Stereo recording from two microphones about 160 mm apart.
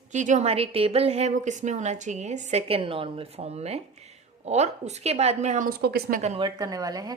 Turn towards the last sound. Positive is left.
turn(degrees=-25)  # may be behind; listen again after turning